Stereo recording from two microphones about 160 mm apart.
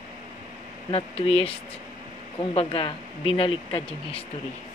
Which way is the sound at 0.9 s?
40° left (ahead or behind).